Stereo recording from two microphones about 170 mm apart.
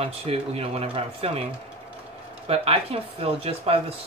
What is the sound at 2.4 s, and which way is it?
Speech, 35° right (ahead or behind).